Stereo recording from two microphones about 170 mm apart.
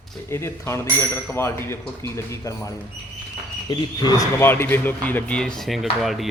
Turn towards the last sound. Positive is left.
turn(degrees=0)  # may be behind; listen again after turning